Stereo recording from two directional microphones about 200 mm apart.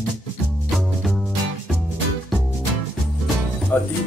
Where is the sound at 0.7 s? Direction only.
Centre (ahead or behind).